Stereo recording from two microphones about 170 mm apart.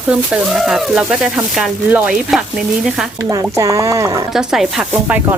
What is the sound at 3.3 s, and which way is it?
Speech, 20° right (ahead or behind).